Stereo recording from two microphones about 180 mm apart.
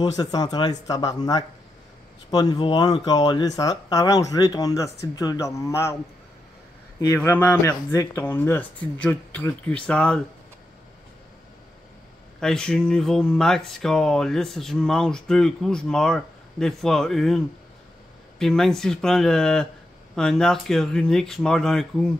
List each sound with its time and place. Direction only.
0.0 s speech: 20° left (ahead or behind)
7.2 s speech: 10° left (ahead or behind)
12.4 s speech: 5° left (ahead or behind)
18.4 s speech: 5° left (ahead or behind)